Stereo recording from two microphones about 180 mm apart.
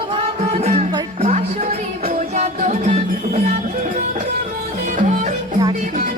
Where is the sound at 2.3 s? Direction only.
45° right (ahead or behind).